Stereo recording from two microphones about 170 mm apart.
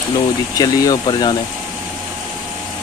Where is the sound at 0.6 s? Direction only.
20° left (ahead or behind).